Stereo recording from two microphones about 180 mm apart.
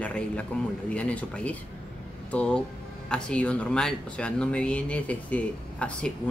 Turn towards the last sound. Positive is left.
turn(degrees=5)  # may be behind; listen again after turning